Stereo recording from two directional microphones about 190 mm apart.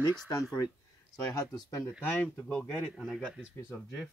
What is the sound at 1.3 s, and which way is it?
Speech, 20° left (ahead or behind).